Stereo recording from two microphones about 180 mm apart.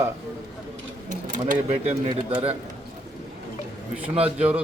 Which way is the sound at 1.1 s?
50° right (ahead or behind).